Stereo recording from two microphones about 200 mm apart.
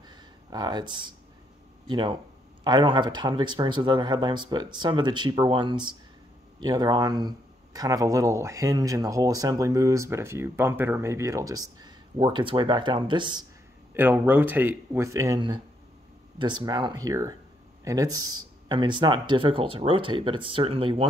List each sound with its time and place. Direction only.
0.1 s a sound: 20° right (ahead or behind)
1.9 s speech: 25° right (ahead or behind)
13.9 s speech: 10° right (ahead or behind); by 21.1 s 25° right (ahead or behind)